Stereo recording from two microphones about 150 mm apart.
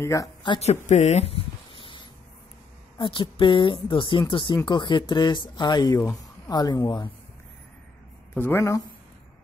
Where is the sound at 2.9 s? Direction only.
35° left (ahead or behind).